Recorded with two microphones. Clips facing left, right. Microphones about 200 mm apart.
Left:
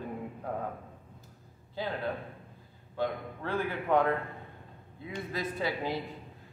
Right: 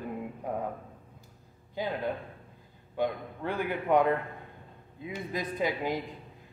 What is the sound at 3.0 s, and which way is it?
A man's voice, 15° right (ahead or behind).